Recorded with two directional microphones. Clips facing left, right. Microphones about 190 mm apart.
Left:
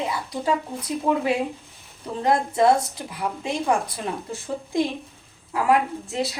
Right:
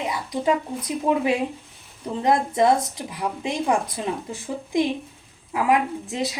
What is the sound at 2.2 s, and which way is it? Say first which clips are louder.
A woman's voice: even; 20° right (ahead or behind).